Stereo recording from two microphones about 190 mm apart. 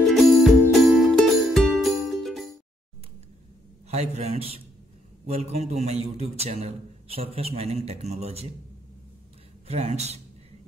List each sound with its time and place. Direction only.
0.0 s music: centre (ahead or behind)
3.9 s a man's voice: 35° right (ahead or behind)
9.7 s a man's voice: 35° right (ahead or behind)